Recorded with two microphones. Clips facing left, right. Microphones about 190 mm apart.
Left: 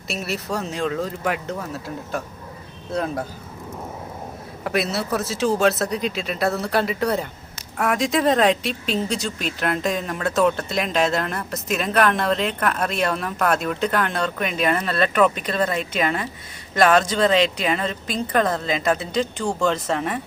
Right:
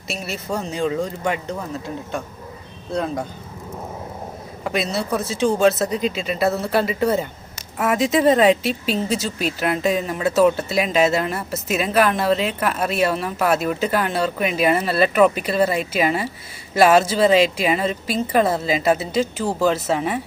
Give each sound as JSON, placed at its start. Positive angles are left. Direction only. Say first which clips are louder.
{"t": 0.1, "sound": "speech", "louder": "even", "side_deg": 0}
{"t": 4.6, "sound": "a woman's voice", "louder": "even", "side_deg": 0}